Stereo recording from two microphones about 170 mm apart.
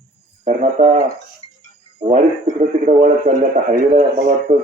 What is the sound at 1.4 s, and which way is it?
Music, 35° left (ahead or behind).